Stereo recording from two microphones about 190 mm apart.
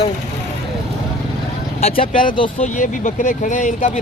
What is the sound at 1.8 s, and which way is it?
Speech, 45° left (ahead or behind).